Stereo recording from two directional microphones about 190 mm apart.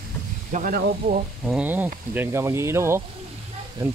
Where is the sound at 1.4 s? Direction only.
5° right (ahead or behind).